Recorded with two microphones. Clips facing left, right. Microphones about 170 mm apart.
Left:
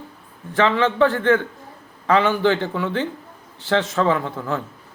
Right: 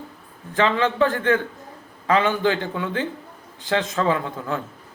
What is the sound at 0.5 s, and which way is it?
Speech, 15° right (ahead or behind).